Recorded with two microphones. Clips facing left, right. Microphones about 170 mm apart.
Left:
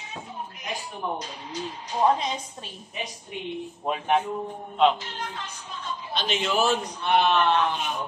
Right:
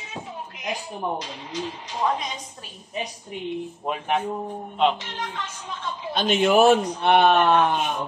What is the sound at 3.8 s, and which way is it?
Speech, centre (ahead or behind).